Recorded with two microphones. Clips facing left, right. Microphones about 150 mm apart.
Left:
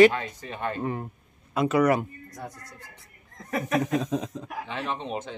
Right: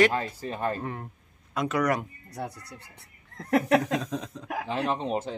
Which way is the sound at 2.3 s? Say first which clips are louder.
Right 6 dB; 65° right (ahead or behind).